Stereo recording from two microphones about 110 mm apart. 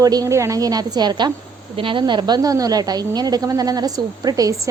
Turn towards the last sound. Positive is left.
turn(degrees=-35)  # may be behind; listen again after turning